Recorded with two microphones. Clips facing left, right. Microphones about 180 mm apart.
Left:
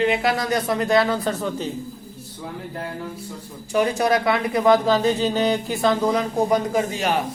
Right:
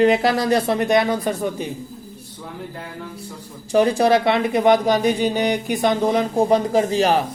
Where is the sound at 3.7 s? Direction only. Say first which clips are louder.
Right 4 dB; 35° right (ahead or behind).